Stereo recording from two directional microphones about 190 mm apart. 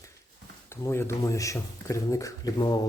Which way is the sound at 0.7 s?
15° left (ahead or behind).